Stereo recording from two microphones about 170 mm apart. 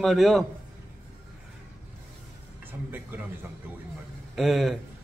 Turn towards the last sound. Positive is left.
turn(degrees=0)  # may be behind; listen again after turning